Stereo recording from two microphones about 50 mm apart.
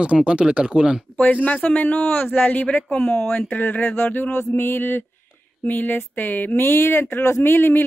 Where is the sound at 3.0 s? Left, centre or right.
Centre.